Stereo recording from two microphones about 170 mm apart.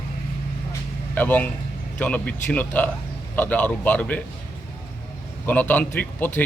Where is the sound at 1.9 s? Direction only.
5° left (ahead or behind).